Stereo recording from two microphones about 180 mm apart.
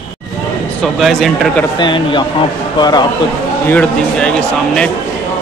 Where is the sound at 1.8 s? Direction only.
25° left (ahead or behind).